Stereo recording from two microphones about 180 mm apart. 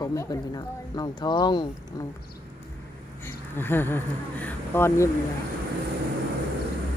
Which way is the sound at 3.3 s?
10° left (ahead or behind).